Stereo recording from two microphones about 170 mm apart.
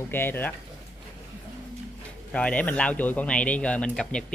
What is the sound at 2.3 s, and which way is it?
Speech, 5° left (ahead or behind).